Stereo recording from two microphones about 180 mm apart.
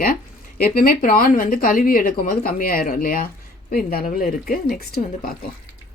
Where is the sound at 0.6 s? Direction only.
55° left (ahead or behind).